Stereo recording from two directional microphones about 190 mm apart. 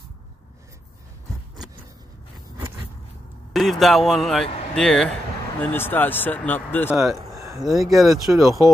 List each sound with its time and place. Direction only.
3.5 s a man's voice: centre (ahead or behind)
7.3 s a sound: 15° right (ahead or behind)
7.6 s a man's voice: centre (ahead or behind)